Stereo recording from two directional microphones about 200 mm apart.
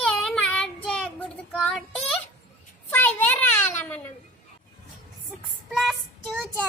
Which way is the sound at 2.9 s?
10° left (ahead or behind).